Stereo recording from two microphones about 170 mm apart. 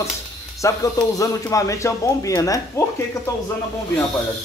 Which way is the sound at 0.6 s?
20° left (ahead or behind).